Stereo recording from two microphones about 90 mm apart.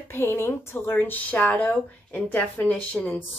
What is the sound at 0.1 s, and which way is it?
A woman's voice, 25° left (ahead or behind).